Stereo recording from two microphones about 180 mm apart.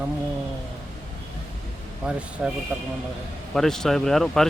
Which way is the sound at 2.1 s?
5° right (ahead or behind).